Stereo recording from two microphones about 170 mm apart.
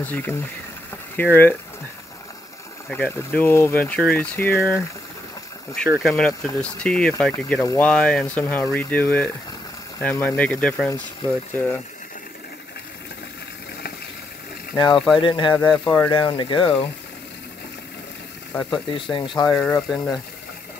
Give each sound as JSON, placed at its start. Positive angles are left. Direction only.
{"t": 0.0, "sound": "speech", "side_deg": 10}
{"t": 2.9, "sound": "speech", "side_deg": 10}
{"t": 14.8, "sound": "speech", "side_deg": 25}
{"t": 18.5, "sound": "speech", "side_deg": 5}
{"t": 18.9, "sound": "speech", "side_deg": 30}